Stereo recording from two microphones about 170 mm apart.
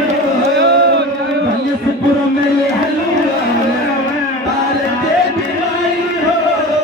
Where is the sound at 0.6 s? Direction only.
85° right.